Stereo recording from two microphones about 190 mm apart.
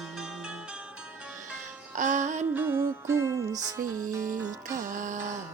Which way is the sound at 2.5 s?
10° right (ahead or behind).